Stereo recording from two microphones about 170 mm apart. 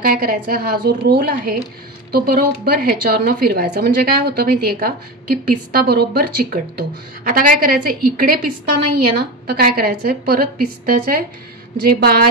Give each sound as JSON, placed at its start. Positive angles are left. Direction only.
{"t": 0.0, "sound": "a woman's voice", "side_deg": -60}